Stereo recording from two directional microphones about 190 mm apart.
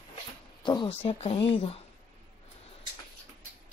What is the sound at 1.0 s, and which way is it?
Speech, 30° left (ahead or behind).